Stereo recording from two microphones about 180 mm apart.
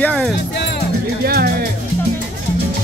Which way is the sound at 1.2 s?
60° right (ahead or behind).